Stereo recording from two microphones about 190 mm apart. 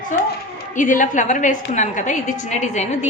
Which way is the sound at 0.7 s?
40° left (ahead or behind).